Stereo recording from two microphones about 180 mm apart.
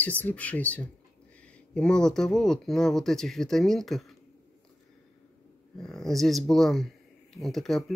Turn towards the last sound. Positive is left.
turn(degrees=0)  # may be behind; listen again after turning